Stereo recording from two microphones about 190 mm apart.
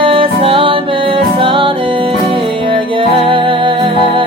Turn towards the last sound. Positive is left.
turn(degrees=-25)  # may be behind; listen again after turning